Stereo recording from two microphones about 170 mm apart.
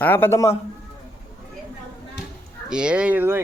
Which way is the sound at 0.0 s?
10° left (ahead or behind).